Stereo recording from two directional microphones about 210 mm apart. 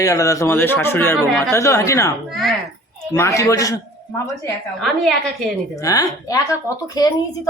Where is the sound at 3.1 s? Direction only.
15° left (ahead or behind).